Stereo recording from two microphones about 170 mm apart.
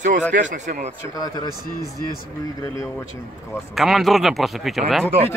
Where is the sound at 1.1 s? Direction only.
25° left (ahead or behind).